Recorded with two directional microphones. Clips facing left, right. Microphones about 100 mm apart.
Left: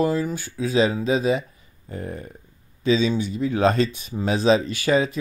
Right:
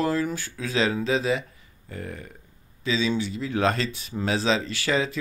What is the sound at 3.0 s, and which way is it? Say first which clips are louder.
Speech: left 4 dB; 20° left (ahead or behind).